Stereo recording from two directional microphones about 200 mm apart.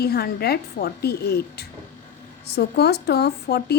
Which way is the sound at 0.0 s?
50° left (ahead or behind).